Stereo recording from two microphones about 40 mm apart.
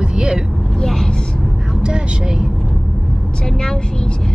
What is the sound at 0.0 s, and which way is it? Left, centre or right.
Vehicle, centre.